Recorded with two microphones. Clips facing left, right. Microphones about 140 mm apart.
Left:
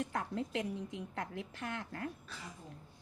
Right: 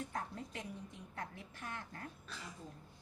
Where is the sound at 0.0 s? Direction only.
90° left.